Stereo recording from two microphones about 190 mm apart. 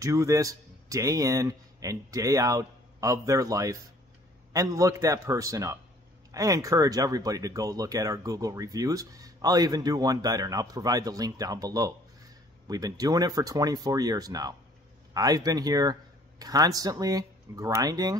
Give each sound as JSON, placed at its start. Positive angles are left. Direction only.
{"t": 0.0, "sound": "a man's voice", "side_deg": -15}